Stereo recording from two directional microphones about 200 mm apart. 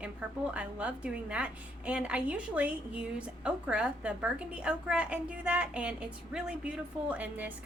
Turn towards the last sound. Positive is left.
turn(degrees=-5)  # may be behind; listen again after turning